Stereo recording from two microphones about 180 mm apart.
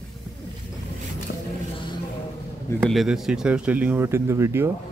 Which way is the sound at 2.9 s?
Centre (ahead or behind).